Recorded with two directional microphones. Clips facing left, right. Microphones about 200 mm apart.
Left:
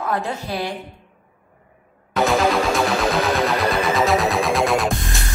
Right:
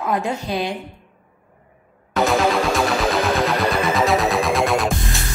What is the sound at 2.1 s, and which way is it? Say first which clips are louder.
Music: even; centre (ahead or behind).